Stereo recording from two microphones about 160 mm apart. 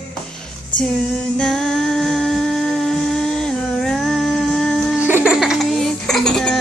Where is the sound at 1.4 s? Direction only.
5° left (ahead or behind).